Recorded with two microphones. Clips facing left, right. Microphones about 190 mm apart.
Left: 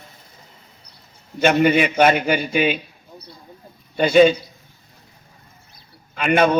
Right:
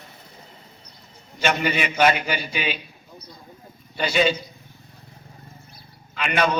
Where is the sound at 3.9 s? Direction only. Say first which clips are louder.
Left 8 dB; 50° left (ahead or behind).